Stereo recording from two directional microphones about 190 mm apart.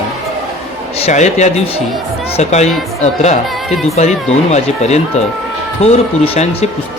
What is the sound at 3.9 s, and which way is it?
Speech, 35° left (ahead or behind).